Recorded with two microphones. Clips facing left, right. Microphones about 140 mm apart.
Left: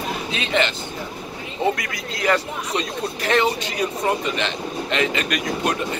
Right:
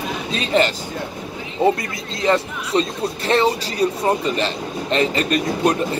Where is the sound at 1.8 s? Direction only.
30° right (ahead or behind).